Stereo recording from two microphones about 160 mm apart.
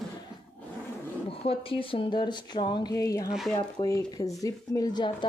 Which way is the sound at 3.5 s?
25° left (ahead or behind).